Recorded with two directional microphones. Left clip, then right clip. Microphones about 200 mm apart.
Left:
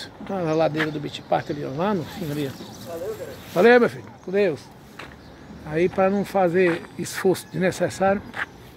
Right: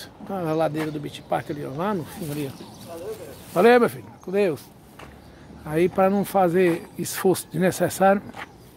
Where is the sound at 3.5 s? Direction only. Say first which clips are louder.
Left 1 dB; 15° right (ahead or behind).